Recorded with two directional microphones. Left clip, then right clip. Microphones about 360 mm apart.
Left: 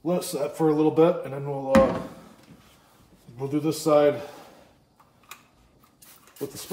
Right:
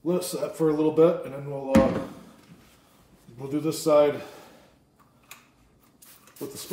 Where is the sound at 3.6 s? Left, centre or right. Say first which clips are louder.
Even; centre.